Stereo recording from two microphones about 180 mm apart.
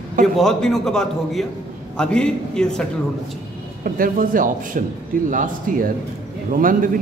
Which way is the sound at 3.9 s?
50° right (ahead or behind).